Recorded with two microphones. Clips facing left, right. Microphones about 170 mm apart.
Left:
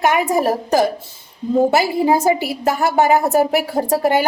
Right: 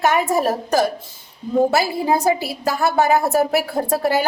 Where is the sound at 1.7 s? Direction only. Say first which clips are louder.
Left 3 dB; 20° left (ahead or behind).